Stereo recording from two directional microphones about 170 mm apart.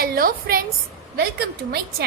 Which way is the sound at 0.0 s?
60° right (ahead or behind).